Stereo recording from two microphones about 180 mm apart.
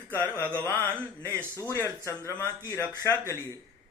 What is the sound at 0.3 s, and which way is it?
Speech, 10° left (ahead or behind).